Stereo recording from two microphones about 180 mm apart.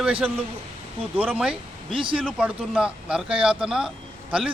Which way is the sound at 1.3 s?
5° right (ahead or behind).